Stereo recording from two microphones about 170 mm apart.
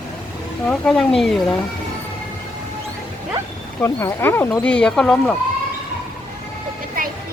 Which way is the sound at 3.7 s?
15° left (ahead or behind).